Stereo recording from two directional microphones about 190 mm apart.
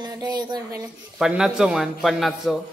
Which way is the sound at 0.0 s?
20° right (ahead or behind).